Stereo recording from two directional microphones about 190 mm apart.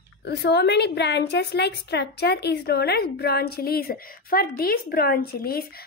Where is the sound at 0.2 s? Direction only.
60° left (ahead or behind).